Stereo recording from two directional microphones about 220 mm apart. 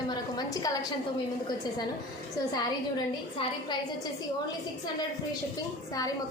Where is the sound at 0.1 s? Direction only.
15° left (ahead or behind).